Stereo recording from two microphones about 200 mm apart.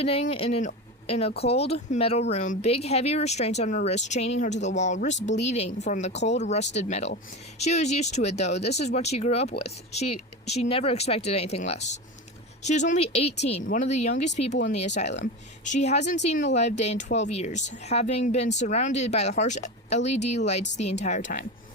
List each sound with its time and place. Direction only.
0.0 s speech: 30° left (ahead or behind)